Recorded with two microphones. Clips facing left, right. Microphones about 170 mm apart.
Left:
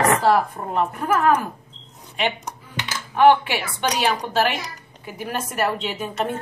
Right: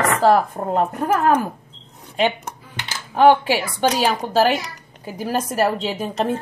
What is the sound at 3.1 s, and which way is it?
A woman's voice, 35° right (ahead or behind).